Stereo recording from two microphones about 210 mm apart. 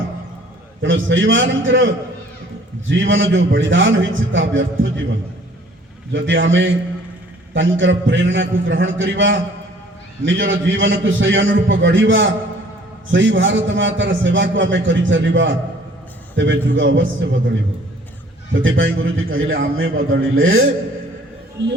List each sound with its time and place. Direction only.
0.8 s a man's voice: 65° right (ahead or behind)
6.1 s a man's voice: 65° right (ahead or behind)
18.5 s a man's voice: 65° right (ahead or behind)